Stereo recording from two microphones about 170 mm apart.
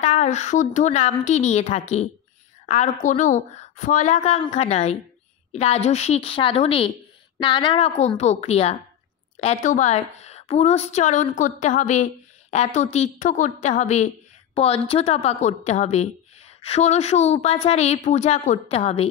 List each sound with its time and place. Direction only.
0.0 s a woman's voice: 45° left (ahead or behind)
7.3 s a woman's voice: 25° left (ahead or behind)